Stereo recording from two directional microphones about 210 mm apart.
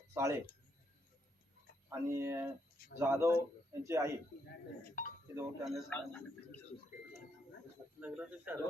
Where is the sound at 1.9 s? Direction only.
15° right (ahead or behind).